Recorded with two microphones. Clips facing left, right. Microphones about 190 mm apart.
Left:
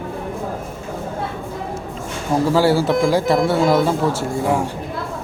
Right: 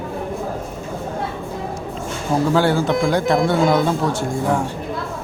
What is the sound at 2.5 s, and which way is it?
A man's voice, 5° left (ahead or behind).